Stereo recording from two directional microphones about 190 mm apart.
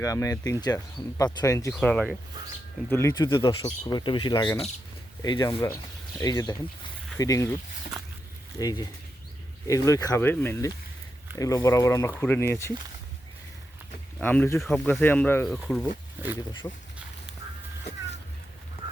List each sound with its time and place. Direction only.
0.0 s speech: 15° left (ahead or behind)
1.7 s speech: 5° left (ahead or behind)
8.5 s speech: 20° left (ahead or behind)
14.2 s speech: 10° left (ahead or behind)
16.5 s speech: 25° left (ahead or behind)